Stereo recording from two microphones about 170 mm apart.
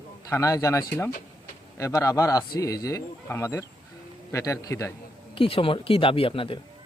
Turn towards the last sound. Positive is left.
turn(degrees=30)  # may be behind; listen again after turning